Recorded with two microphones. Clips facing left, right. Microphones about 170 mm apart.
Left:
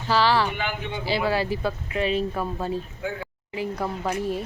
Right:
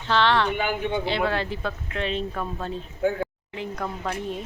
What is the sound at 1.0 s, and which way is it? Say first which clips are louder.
A woman's voice: left 1 dB; 5° left (ahead or behind).